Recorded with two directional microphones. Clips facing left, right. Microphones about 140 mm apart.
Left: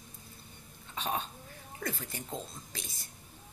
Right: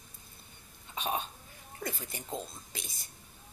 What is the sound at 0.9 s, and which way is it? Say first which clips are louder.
A woman's voice: right 1 dB; 15° right (ahead or behind).